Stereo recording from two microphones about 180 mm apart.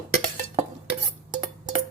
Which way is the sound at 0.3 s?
35° right (ahead or behind).